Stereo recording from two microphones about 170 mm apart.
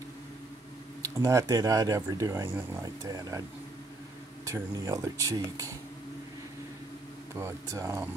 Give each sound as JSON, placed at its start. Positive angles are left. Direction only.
{"t": 1.0, "sound": "speech", "side_deg": -20}
{"t": 4.5, "sound": "speech", "side_deg": -20}
{"t": 7.3, "sound": "speech", "side_deg": -15}